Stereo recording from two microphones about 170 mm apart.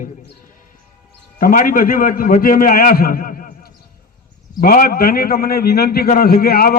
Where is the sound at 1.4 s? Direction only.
55° left (ahead or behind).